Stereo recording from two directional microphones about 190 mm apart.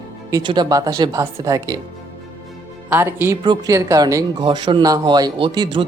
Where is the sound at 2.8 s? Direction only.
10° right (ahead or behind).